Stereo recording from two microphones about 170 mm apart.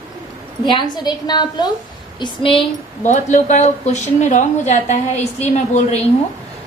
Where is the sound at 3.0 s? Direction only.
45° left (ahead or behind).